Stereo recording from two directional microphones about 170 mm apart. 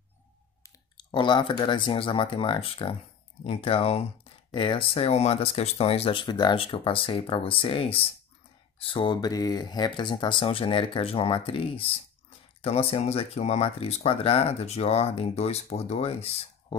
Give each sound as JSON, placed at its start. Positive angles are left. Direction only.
{"t": 0.9, "sound": "speech", "side_deg": 25}